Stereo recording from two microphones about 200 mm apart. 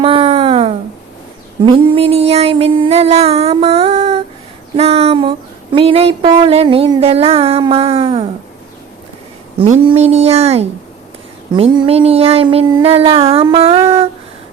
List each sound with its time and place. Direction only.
0.0 s a sound: 25° right (ahead or behind)
1.6 s female singing: 25° right (ahead or behind)
4.8 s a sound: 30° right (ahead or behind)
5.7 s child singing: 30° right (ahead or behind)
9.6 s female singing: 30° right (ahead or behind)
11.5 s child singing: 25° right (ahead or behind)